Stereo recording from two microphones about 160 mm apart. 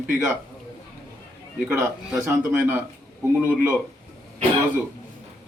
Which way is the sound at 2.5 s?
15° right (ahead or behind).